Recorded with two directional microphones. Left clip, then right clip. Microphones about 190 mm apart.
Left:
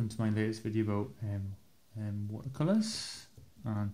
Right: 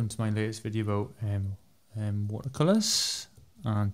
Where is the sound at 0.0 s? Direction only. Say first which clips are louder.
Right 2 dB; 35° right (ahead or behind).